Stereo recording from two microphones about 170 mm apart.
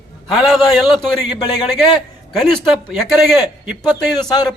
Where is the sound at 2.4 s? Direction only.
Centre (ahead or behind).